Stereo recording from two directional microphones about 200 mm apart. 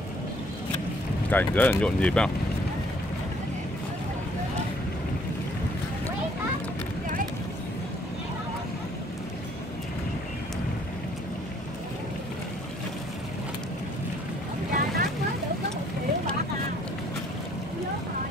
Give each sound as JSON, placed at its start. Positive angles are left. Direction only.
{"t": 1.3, "sound": "speech", "side_deg": 10}
{"t": 14.7, "sound": "boat", "side_deg": -45}